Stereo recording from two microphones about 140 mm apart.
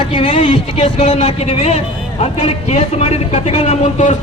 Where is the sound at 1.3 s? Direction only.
45° left (ahead or behind).